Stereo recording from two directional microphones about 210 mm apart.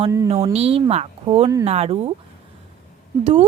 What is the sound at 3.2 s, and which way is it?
Speech, 30° right (ahead or behind).